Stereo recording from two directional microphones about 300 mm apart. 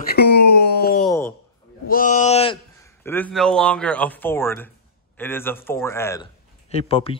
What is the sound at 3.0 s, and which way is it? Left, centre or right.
Speech, centre.